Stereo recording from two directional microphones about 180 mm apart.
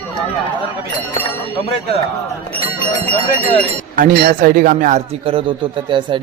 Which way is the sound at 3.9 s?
55° right (ahead or behind).